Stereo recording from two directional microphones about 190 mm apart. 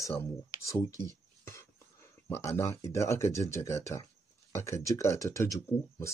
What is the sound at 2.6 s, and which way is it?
Speech, 15° left (ahead or behind).